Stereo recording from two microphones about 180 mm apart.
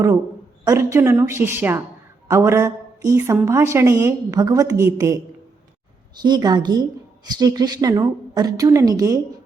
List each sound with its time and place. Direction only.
0.6 s a woman's voice: 15° right (ahead or behind)
2.2 s a sound: 15° right (ahead or behind)
3.4 s a woman's voice: 15° right (ahead or behind)